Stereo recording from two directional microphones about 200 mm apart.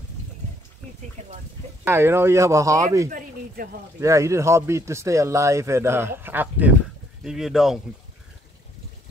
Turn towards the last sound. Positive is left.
turn(degrees=0)  # may be behind; listen again after turning